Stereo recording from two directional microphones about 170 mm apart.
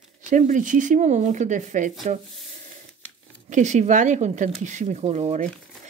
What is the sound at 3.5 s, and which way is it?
Speech, 45° right (ahead or behind).